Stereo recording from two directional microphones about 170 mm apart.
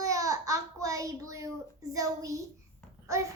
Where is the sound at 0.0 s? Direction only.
20° right (ahead or behind).